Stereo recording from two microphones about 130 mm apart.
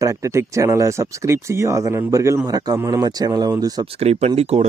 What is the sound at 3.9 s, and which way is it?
Speech, 55° right (ahead or behind).